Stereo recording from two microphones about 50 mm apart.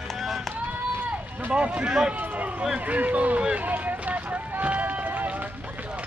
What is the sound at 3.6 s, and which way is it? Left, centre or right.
Run, right.